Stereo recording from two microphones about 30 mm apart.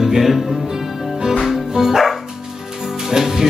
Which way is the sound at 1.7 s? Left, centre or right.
Centre.